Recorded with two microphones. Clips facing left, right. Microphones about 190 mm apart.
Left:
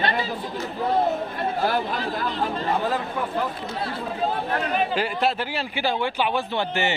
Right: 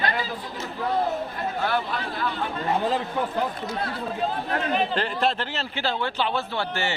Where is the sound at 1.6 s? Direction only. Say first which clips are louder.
Left 2 dB; 40° left (ahead or behind).